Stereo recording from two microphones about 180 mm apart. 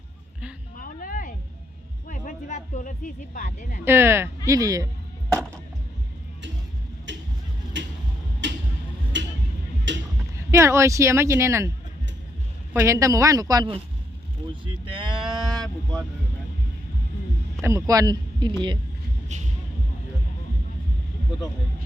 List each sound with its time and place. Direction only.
0.8 s a sound: 50° left (ahead or behind)
2.0 s speech: 45° left (ahead or behind)
3.8 s speech: 15° right (ahead or behind)
7.1 s vehicle: 85° right
7.8 s a sound: 85° right
9.1 s music: 90° right
9.9 s a sound: 90° right
10.3 s speech: 15° right (ahead or behind)
12.7 s speech: 15° right (ahead or behind)
14.9 s speech: 25° right (ahead or behind)
15.2 s vehicle: centre (ahead or behind)
17.6 s speech: 15° right (ahead or behind)
19.3 s speech: 40° right (ahead or behind)